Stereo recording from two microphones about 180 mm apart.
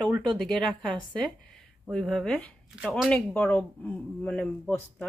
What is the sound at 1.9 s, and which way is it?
A woman's voice, centre (ahead or behind).